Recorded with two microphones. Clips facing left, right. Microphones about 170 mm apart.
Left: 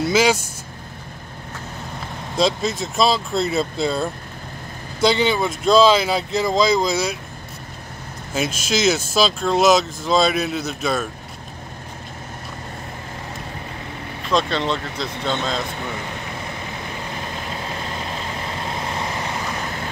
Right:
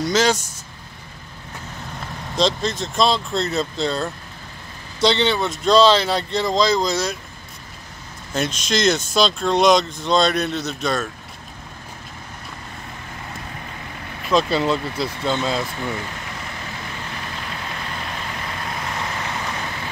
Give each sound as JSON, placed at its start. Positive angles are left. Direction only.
{"t": 0.0, "sound": "speech", "side_deg": 10}
{"t": 2.3, "sound": "speech", "side_deg": 5}
{"t": 8.3, "sound": "speech", "side_deg": 5}
{"t": 14.3, "sound": "speech", "side_deg": -5}
{"t": 18.6, "sound": "vehicle", "side_deg": 25}